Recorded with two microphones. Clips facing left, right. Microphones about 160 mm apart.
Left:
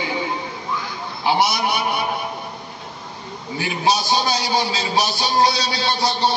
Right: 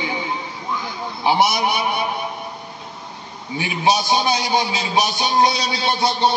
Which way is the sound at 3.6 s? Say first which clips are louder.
Right 1 dB; 20° right (ahead or behind).